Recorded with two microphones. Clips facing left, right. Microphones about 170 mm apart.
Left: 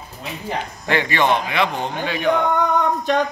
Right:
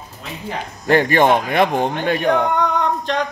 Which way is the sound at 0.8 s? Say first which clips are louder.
Right 5 dB; 45° right (ahead or behind).